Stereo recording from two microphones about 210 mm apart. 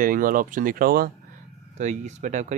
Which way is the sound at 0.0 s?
40° right (ahead or behind).